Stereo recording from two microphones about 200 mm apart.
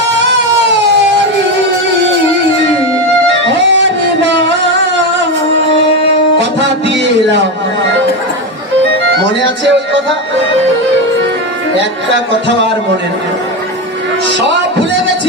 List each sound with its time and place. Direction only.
3.3 s music: 65° right (ahead or behind)
6.8 s a sound: 60° right (ahead or behind)
14.3 s speech: 65° right (ahead or behind)